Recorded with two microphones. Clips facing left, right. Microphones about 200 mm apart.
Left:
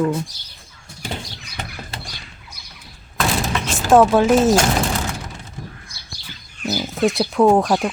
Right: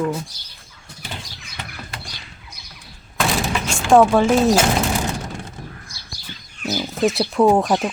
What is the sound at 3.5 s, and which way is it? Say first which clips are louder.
Speech: even; centre (ahead or behind).